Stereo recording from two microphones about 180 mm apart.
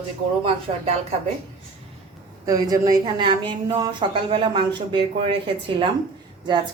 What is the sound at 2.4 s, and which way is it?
A woman's voice, 20° right (ahead or behind).